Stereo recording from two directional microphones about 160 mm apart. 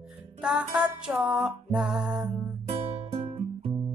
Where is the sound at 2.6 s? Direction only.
40° right (ahead or behind).